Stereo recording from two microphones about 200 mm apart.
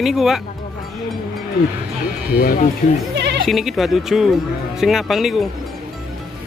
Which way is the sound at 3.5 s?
Centre (ahead or behind).